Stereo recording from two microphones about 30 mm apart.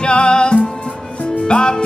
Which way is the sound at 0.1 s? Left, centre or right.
Left.